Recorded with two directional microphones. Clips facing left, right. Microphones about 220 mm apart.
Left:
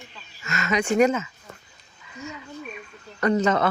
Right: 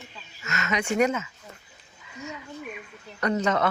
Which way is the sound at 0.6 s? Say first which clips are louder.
Left 4 dB; 30° left (ahead or behind).